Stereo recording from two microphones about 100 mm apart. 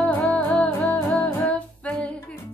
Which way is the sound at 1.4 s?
15° left (ahead or behind).